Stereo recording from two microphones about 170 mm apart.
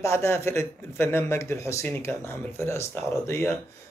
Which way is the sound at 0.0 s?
15° left (ahead or behind).